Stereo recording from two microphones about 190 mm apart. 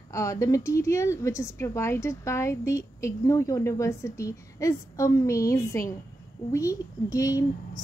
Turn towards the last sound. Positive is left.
turn(degrees=20)  # may be behind; listen again after turning